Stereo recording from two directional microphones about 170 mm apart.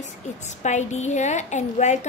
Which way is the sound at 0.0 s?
45° left (ahead or behind).